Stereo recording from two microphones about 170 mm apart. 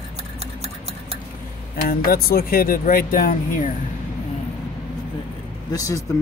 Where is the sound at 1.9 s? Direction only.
60° left (ahead or behind).